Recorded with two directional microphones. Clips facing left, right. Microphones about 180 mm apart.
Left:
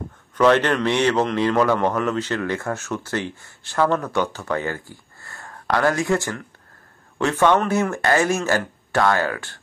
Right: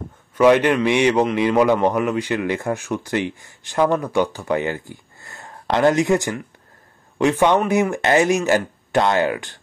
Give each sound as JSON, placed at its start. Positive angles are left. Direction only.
{"t": 0.4, "sound": "a man's voice", "side_deg": -10}